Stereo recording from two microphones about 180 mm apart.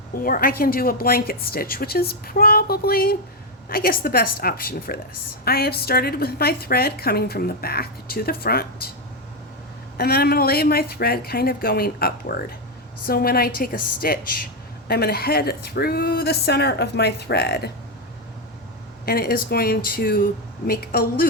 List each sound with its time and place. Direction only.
0.2 s a woman's voice: 50° left (ahead or behind)
10.0 s a woman's voice: 60° left (ahead or behind)
19.0 s a woman's voice: 55° left (ahead or behind)